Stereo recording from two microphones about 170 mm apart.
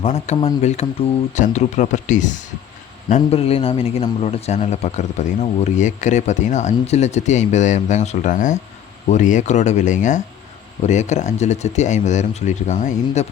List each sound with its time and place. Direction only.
0.0 s a man's voice: 40° left (ahead or behind)